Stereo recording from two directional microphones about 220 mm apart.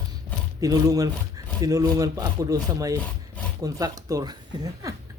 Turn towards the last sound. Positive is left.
turn(degrees=-15)  # may be behind; listen again after turning